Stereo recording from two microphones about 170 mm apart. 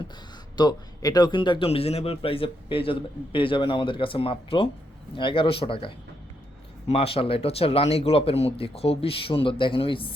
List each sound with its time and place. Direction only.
0.5 s a man's voice: 25° left (ahead or behind)